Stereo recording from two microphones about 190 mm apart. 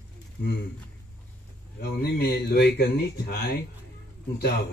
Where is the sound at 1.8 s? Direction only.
60° left (ahead or behind).